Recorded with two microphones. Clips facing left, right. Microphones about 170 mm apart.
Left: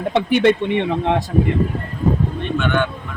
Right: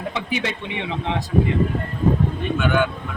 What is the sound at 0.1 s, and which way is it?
Speech, 60° left (ahead or behind).